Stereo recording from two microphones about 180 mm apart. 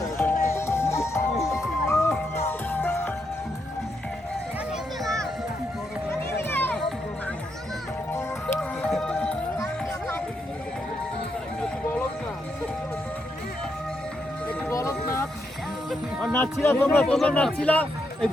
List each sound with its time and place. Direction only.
0.0 s music: 15° left (ahead or behind)
5.0 s music: 5° left (ahead or behind)
8.1 s music: 15° left (ahead or behind)
14.4 s music: 15° left (ahead or behind)
15.9 s music: centre (ahead or behind)
16.6 s speech: 10° left (ahead or behind)